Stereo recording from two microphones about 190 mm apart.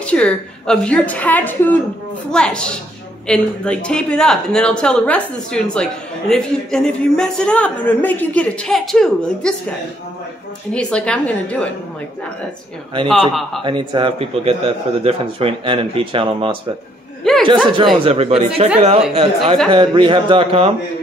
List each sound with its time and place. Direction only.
0.0 s a woman's voice: 5° left (ahead or behind)
13.1 s a man's voice: centre (ahead or behind)
13.7 s speech: 25° right (ahead or behind)
17.2 s chuckle: centre (ahead or behind)
17.9 s speech: 30° right (ahead or behind)